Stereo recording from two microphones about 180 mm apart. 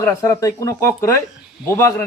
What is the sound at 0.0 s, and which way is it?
A man's voice, 15° left (ahead or behind).